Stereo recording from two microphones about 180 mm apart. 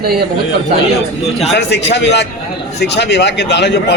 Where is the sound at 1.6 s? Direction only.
70° left (ahead or behind).